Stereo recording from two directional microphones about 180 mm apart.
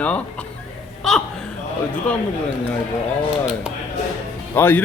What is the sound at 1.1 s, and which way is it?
Speech, centre (ahead or behind).